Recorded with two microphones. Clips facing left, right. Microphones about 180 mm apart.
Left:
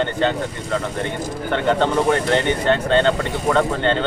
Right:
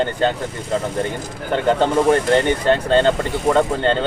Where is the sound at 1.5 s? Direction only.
35° right (ahead or behind).